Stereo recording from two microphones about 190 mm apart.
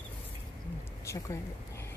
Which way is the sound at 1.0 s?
15° left (ahead or behind).